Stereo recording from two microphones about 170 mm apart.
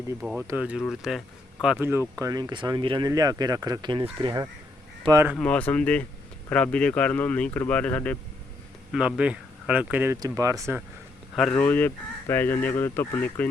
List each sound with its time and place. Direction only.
0.2 s speech: 5° right (ahead or behind)
2.1 s speech: 20° right (ahead or behind)
5.0 s speech: 20° right (ahead or behind)
5.3 s speech: 5° left (ahead or behind)
8.9 s speech: 5° right (ahead or behind)
11.3 s speech: 5° left (ahead or behind)